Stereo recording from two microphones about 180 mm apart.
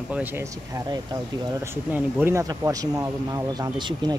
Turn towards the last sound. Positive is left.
turn(degrees=-25)  # may be behind; listen again after turning